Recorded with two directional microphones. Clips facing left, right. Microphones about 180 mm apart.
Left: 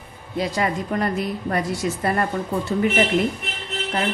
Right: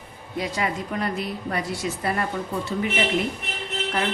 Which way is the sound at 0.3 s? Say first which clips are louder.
Left 4 dB; 40° left (ahead or behind).